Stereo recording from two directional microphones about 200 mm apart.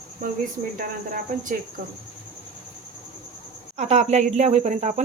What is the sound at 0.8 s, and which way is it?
Speech, 45° right (ahead or behind).